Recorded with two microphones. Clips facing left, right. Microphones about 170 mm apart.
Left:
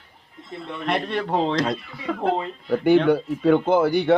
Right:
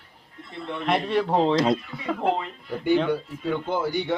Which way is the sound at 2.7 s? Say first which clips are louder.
Left 6 dB; 65° left (ahead or behind).